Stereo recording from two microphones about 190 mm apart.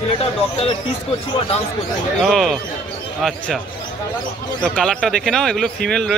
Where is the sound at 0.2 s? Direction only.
30° left (ahead or behind).